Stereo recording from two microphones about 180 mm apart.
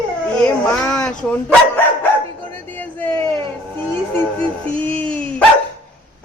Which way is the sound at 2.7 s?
10° left (ahead or behind).